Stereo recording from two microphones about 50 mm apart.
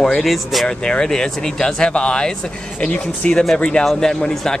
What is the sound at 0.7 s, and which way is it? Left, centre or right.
Speech, centre.